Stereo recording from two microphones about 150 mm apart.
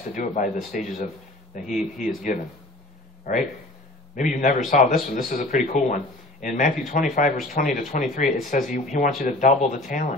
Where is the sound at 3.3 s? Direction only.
65° left (ahead or behind).